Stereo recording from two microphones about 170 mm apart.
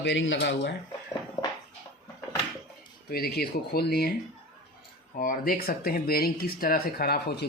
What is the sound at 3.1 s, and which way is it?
Speech, 65° left (ahead or behind).